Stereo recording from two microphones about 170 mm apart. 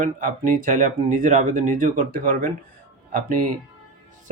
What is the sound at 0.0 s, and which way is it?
Speech, 55° right (ahead or behind).